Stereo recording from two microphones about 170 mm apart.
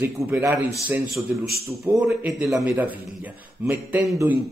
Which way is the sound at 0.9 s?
Centre (ahead or behind).